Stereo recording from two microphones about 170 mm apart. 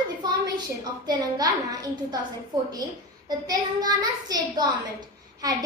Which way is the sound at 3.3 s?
20° right (ahead or behind).